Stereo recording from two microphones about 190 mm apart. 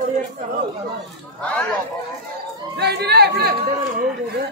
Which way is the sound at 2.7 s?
60° right (ahead or behind).